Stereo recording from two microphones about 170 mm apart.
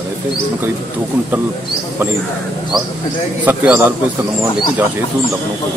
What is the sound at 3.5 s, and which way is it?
Speech, 10° right (ahead or behind).